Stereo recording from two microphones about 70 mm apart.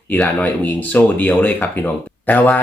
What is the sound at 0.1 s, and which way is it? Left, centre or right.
Speech, left.